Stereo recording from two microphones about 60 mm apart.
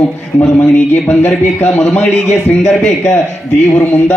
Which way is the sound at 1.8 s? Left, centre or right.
Centre.